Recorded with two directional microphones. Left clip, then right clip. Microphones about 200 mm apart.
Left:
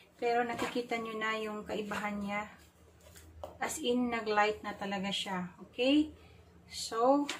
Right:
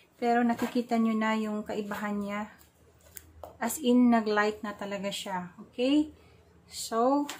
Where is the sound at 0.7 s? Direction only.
45° right (ahead or behind).